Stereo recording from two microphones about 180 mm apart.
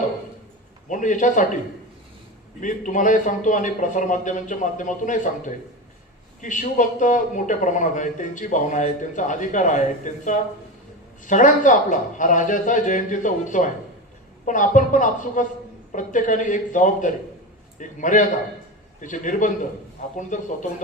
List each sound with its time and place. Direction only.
0.9 s a man's voice: 45° left (ahead or behind)
2.6 s a man's voice: 45° left (ahead or behind)